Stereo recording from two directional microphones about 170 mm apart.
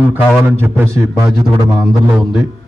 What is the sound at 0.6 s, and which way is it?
Speech, 15° right (ahead or behind).